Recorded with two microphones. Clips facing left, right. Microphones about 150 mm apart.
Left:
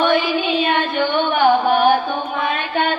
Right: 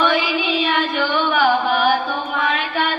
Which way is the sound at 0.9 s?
25° left (ahead or behind).